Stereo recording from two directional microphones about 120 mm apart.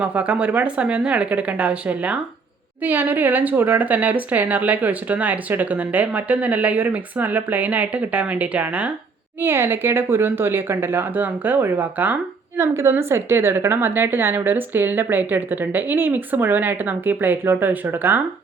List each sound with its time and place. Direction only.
0.0 s speech: 10° right (ahead or behind)